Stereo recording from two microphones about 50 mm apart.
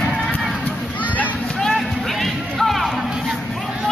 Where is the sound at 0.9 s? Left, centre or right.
Left.